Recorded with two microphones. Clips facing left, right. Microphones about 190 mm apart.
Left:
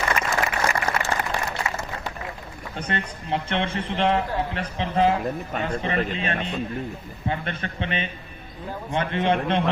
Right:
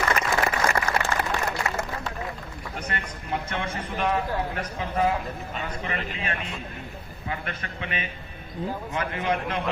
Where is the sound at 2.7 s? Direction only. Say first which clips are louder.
Left 5 dB; 30° left (ahead or behind).